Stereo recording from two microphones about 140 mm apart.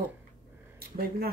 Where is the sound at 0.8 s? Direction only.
90° right.